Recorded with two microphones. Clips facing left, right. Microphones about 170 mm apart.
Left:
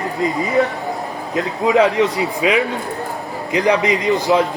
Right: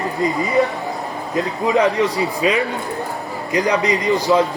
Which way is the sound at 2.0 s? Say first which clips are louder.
Left 1 dB; 20° left (ahead or behind).